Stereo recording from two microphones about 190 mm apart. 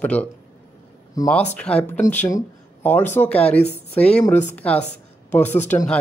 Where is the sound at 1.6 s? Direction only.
5° left (ahead or behind).